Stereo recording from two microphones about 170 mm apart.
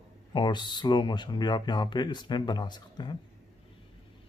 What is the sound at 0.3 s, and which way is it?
Speech, 25° left (ahead or behind).